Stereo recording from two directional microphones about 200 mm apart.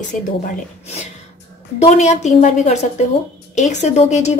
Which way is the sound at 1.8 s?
35° left (ahead or behind).